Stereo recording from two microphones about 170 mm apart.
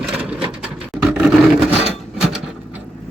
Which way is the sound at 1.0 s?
5° right (ahead or behind).